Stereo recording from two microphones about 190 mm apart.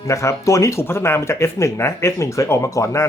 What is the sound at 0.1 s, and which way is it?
Speech, 15° left (ahead or behind).